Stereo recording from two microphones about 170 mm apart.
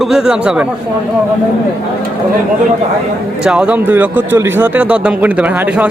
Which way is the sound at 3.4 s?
5° right (ahead or behind).